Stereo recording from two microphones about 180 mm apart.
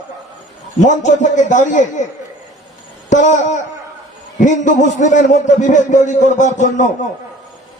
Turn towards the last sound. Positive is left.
turn(degrees=40)  # may be behind; listen again after turning